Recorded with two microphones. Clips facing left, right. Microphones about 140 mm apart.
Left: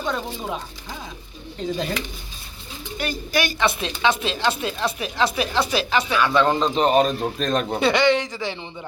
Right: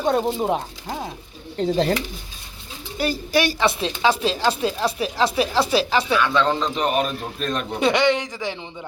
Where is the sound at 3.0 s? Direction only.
35° right (ahead or behind).